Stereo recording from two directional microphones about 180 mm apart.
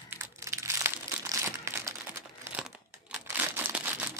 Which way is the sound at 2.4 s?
5° right (ahead or behind).